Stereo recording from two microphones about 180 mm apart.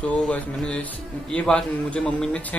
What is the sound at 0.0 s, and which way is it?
Speech, 5° left (ahead or behind).